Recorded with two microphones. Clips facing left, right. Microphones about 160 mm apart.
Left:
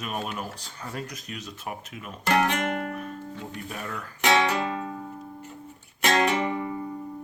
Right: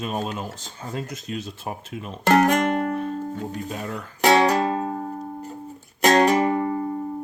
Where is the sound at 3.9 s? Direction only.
40° right (ahead or behind).